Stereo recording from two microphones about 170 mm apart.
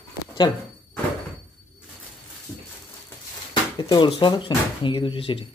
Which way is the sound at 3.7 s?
25° left (ahead or behind).